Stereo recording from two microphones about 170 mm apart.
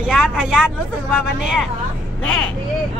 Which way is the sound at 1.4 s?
5° right (ahead or behind).